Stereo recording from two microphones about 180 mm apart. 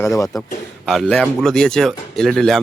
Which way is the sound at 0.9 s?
5° left (ahead or behind).